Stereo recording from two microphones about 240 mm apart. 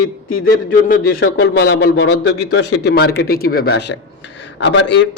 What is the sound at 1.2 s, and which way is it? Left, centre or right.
A man's voice, left.